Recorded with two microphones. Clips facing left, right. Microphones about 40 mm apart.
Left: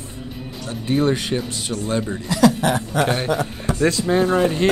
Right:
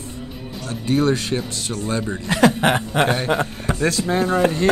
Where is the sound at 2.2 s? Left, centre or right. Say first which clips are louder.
Right 1 dB; right.